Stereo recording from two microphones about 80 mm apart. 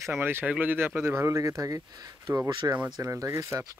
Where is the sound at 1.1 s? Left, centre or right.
Right.